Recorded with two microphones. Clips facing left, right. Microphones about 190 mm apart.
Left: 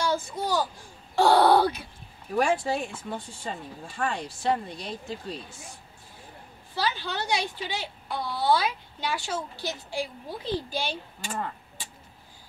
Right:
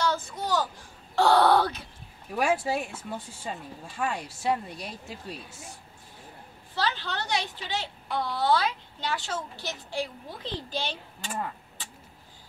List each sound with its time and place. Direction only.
0.0 s a sound: 10° left (ahead or behind)
1.1 s speech: 10° left (ahead or behind)
2.3 s speech: 5° right (ahead or behind)
6.7 s speech: 10° left (ahead or behind)